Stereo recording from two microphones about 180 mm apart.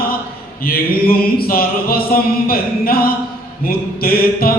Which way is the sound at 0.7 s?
55° left (ahead or behind).